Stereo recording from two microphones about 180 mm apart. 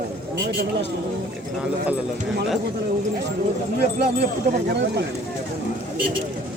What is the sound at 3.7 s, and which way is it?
A man's voice, 60° right (ahead or behind).